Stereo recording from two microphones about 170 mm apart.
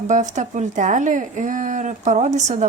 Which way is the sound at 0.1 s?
45° right (ahead or behind).